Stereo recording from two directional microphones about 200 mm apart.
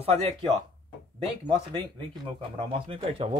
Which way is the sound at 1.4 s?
25° right (ahead or behind).